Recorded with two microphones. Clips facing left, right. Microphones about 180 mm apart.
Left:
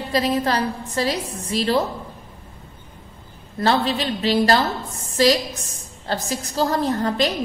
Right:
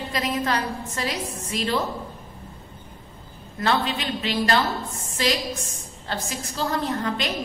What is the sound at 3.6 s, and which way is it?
A woman's voice, 35° left (ahead or behind).